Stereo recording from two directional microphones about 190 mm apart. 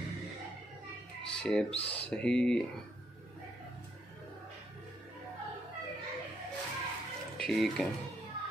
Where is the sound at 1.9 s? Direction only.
5° left (ahead or behind).